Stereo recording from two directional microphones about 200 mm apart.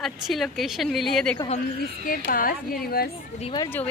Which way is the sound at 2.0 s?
45° left (ahead or behind).